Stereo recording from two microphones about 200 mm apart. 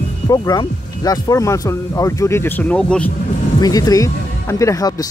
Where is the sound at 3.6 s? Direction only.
20° left (ahead or behind).